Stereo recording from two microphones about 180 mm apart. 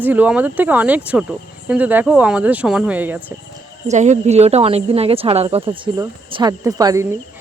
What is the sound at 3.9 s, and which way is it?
Speech, 40° right (ahead or behind).